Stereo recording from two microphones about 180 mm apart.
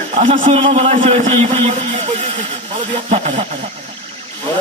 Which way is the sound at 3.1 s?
40° right (ahead or behind).